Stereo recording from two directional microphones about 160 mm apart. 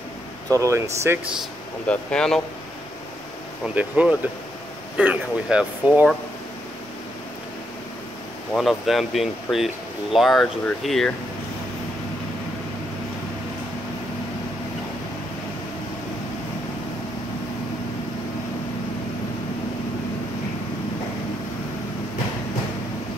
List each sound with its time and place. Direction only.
0.5 s speech: 20° right (ahead or behind)
1.9 s speech: 5° left (ahead or behind)
3.6 s speech: 10° right (ahead or behind)
8.5 s speech: centre (ahead or behind)